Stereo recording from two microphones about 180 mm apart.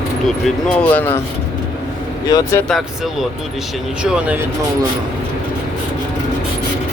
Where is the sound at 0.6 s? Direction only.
5° left (ahead or behind).